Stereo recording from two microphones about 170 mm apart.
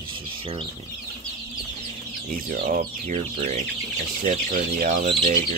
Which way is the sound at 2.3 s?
60° right (ahead or behind).